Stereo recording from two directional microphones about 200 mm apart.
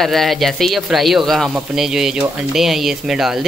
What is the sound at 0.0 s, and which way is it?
Speech, centre (ahead or behind).